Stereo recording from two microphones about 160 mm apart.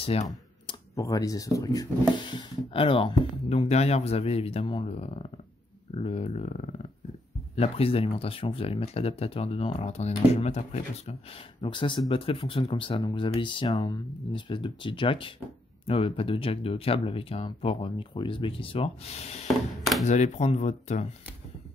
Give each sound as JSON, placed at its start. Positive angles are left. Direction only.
{"t": 0.0, "sound": "speech", "side_deg": 40}
{"t": 0.7, "sound": "speech", "side_deg": 20}